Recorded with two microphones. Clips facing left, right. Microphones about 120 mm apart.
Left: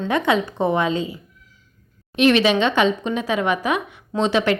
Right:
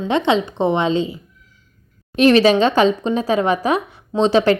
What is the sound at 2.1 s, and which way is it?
Speech, 35° right (ahead or behind).